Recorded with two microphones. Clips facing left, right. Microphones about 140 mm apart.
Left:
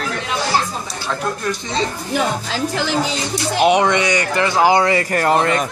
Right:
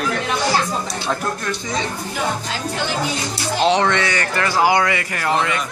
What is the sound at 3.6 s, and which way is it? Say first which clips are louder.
Speech: left 3 dB; 15° left (ahead or behind).